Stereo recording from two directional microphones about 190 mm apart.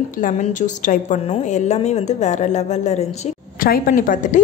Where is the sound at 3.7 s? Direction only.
45° left (ahead or behind).